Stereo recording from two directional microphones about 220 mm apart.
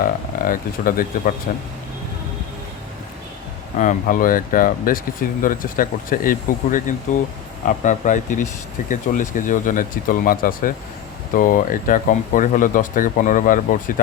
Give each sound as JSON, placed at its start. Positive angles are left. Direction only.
{"t": 0.0, "sound": "speech", "side_deg": 40}
{"t": 3.8, "sound": "speech", "side_deg": 35}